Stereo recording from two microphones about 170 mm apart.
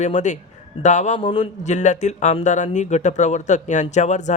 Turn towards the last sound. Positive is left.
turn(degrees=45)  # may be behind; listen again after turning